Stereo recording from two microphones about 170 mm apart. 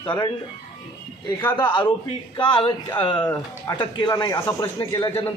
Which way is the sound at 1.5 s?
30° left (ahead or behind).